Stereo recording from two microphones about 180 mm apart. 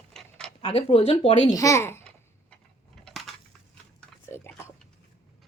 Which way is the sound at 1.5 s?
15° left (ahead or behind).